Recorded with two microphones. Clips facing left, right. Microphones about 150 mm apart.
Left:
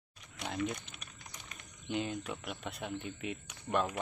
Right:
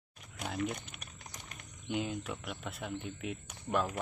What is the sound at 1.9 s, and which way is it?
Speech, 5° right (ahead or behind).